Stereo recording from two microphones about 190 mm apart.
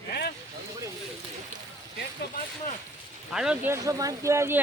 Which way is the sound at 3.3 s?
5° right (ahead or behind).